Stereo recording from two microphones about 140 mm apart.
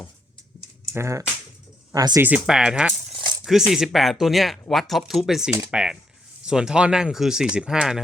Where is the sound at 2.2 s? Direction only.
5° right (ahead or behind).